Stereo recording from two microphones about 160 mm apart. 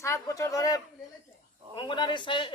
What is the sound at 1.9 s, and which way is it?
Speech, 30° left (ahead or behind).